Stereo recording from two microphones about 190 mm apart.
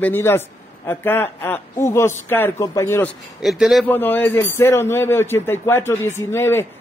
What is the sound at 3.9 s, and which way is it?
A man's voice, 10° left (ahead or behind).